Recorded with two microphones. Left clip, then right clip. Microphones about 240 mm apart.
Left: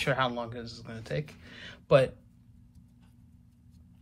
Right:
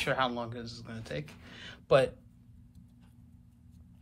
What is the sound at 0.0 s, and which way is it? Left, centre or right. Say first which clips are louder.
Speech: left 2 dB; centre.